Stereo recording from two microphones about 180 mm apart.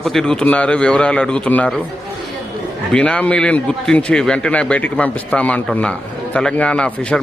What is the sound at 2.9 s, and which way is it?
A man's voice, 5° left (ahead or behind).